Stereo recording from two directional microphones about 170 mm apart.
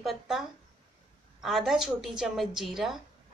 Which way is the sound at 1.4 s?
Centre (ahead or behind).